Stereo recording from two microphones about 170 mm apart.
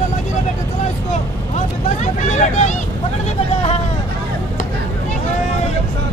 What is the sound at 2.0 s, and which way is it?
Vehicle, 45° left (ahead or behind).